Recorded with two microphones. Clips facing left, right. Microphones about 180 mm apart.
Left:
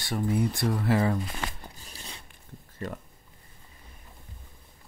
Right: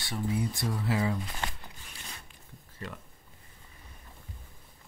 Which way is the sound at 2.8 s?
40° left (ahead or behind).